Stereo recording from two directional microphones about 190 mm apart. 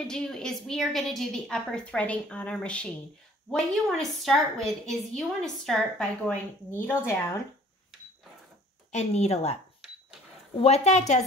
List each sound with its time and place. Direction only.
0.0 s a woman's voice: 5° left (ahead or behind)
8.9 s a woman's voice: 35° left (ahead or behind)
10.6 s a woman's voice: 35° left (ahead or behind)